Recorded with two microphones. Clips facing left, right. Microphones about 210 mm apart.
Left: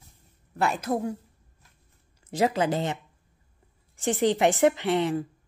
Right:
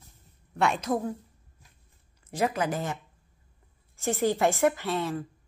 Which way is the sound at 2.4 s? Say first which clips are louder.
Left 4 dB; 25° left (ahead or behind).